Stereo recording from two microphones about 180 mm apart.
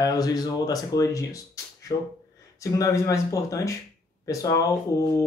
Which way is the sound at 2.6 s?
20° left (ahead or behind).